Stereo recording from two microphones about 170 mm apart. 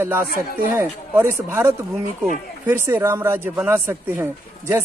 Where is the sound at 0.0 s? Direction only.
15° right (ahead or behind).